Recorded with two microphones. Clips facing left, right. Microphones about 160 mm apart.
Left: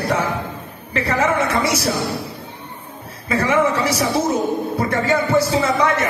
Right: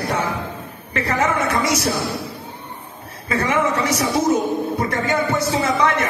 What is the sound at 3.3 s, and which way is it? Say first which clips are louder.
A man's voice: left 2 dB; 30° left (ahead or behind).